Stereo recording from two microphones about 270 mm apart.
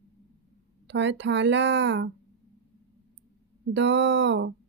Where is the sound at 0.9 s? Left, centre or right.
Right.